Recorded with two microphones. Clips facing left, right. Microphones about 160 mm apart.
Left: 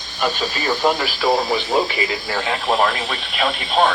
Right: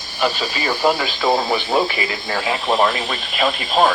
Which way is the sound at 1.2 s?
25° right (ahead or behind).